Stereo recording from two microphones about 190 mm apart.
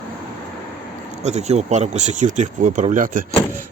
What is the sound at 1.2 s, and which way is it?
Speech, 35° right (ahead or behind).